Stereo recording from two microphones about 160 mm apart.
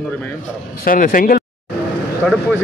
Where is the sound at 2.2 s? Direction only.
10° right (ahead or behind).